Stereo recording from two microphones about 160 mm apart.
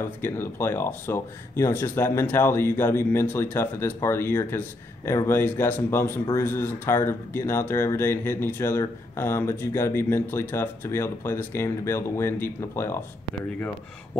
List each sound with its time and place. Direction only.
0.2 s speech: 15° left (ahead or behind)